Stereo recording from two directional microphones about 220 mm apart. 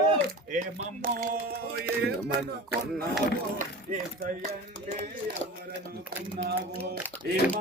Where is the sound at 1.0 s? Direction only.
40° right (ahead or behind).